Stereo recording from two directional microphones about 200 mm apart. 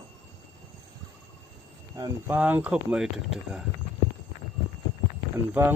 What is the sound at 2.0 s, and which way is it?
Speech, 20° right (ahead or behind).